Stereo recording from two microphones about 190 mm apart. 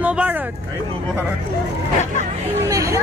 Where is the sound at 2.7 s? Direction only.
15° right (ahead or behind).